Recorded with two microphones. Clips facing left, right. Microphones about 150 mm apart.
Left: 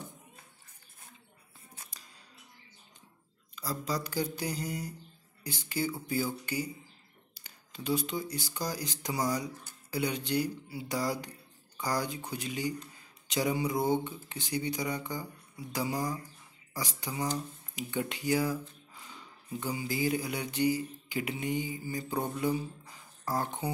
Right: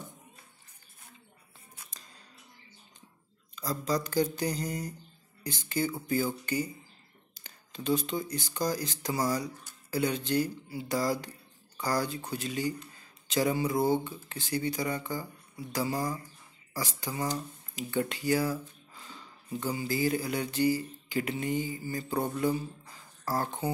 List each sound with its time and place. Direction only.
3.5 s speech: 10° left (ahead or behind)